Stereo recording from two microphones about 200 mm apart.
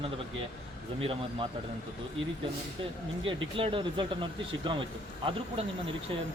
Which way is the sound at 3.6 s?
25° right (ahead or behind).